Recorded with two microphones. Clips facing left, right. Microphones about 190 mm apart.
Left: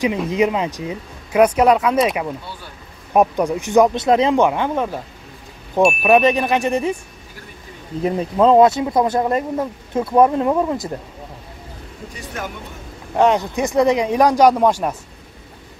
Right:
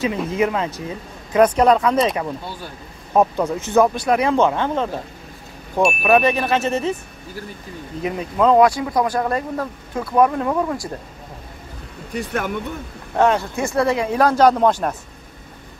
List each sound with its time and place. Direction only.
0.3 s speech: 15° left (ahead or behind)
6.0 s speech: 15° left (ahead or behind)
8.0 s speech: 30° left (ahead or behind)
12.1 s speech: 60° right (ahead or behind)
13.1 s speech: 15° left (ahead or behind)